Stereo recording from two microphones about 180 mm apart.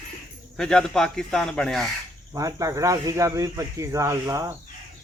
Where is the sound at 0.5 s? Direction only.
5° left (ahead or behind).